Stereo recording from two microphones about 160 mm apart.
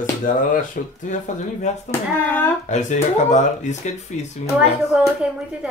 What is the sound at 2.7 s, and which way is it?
Speech, 45° left (ahead or behind).